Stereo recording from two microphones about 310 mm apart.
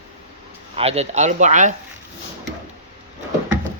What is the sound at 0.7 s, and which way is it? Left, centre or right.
A man's voice, centre.